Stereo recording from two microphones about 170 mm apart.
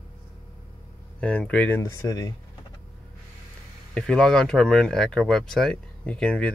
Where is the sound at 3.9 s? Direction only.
5° left (ahead or behind).